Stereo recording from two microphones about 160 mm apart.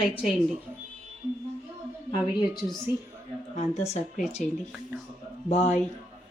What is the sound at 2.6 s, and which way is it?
Speech, centre (ahead or behind).